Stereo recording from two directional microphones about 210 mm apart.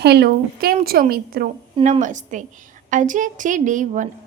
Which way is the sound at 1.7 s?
35° right (ahead or behind).